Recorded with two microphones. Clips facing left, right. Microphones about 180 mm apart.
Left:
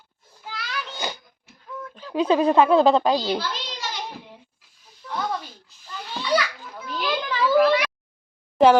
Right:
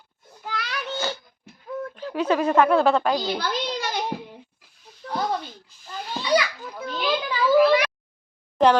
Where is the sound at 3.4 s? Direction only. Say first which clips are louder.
Right 4 dB; 55° right (ahead or behind).